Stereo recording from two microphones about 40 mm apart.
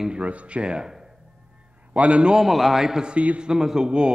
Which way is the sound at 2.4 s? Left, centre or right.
Centre.